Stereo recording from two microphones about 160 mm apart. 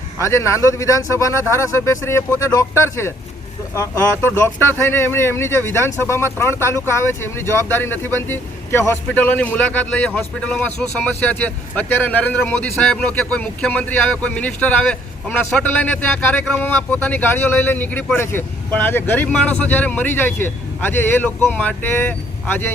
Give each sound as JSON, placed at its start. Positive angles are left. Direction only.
{"t": 0.2, "sound": "speech", "side_deg": 15}